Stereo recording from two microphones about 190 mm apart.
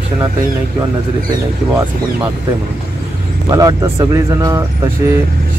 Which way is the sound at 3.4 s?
20° right (ahead or behind).